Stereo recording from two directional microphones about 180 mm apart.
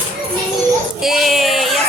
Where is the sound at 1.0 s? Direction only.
Centre (ahead or behind).